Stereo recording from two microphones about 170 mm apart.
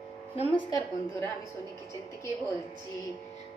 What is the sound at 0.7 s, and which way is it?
Speech, 20° left (ahead or behind).